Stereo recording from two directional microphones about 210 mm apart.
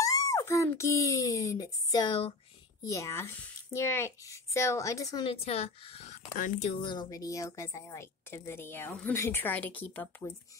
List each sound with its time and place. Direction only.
0.0 s a child's voice: 15° left (ahead or behind); by 6.7 s 40° left (ahead or behind)
6.8 s speech: 20° left (ahead or behind)